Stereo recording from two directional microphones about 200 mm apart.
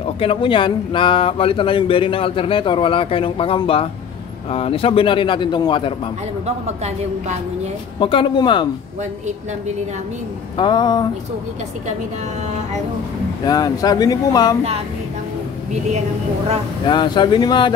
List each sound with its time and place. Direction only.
0.0 s speech: 25° left (ahead or behind)
8.0 s speech: 25° left (ahead or behind)
10.6 s speech: 20° left (ahead or behind)
13.5 s speech: 20° left (ahead or behind)
16.8 s speech: 20° left (ahead or behind)